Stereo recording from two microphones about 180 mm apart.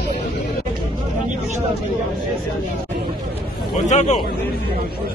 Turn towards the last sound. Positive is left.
turn(degrees=40)  # may be behind; listen again after turning